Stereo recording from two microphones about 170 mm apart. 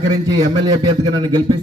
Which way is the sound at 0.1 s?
25° right (ahead or behind).